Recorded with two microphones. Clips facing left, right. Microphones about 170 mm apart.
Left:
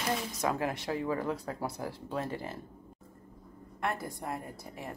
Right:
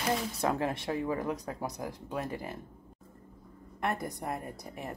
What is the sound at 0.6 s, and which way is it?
Speech, 25° right (ahead or behind).